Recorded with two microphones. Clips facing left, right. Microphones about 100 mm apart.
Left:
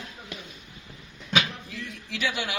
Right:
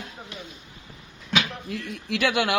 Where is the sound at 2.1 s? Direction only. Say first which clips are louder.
Right 7 dB; 60° right (ahead or behind).